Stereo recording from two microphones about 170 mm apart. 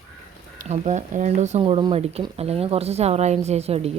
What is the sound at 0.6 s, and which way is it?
Speech, 45° right (ahead or behind).